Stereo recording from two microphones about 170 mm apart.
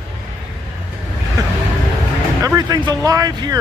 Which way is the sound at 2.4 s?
20° right (ahead or behind).